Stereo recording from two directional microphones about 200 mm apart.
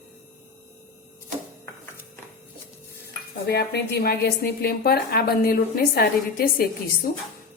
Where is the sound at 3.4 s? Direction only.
55° left (ahead or behind).